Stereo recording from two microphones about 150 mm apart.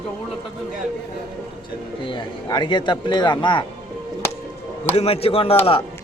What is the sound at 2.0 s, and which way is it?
A man's voice, 30° left (ahead or behind).